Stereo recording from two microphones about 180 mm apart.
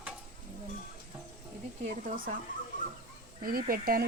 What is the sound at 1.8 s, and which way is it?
Speech, 45° right (ahead or behind).